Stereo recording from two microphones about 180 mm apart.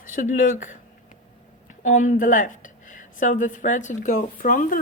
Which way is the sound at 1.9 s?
45° left (ahead or behind).